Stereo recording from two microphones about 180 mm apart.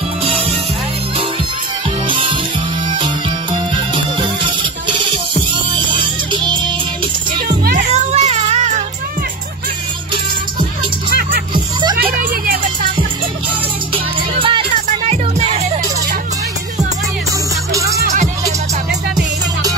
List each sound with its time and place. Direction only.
2.0 s music: 30° right (ahead or behind)
3.9 s music: 25° right (ahead or behind)
7.4 s music: 55° right (ahead or behind)
7.9 s child singing: 40° right (ahead or behind)
14.4 s music: 30° right (ahead or behind)